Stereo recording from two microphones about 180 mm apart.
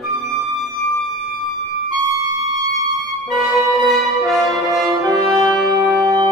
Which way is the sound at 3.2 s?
Centre (ahead or behind).